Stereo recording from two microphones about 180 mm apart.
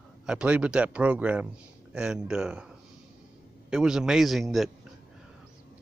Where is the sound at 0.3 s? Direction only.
5° right (ahead or behind).